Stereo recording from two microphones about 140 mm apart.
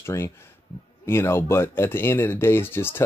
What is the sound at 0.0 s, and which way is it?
Speech, 20° left (ahead or behind).